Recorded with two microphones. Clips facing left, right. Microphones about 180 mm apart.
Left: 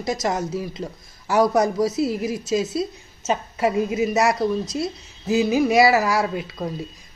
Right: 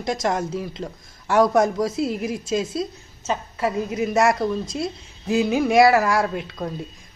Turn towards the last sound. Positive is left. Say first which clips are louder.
# left 1 dB
turn(degrees=5)  # may be behind; listen again after turning